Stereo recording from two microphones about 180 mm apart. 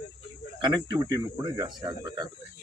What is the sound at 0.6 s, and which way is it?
Speech, 25° right (ahead or behind).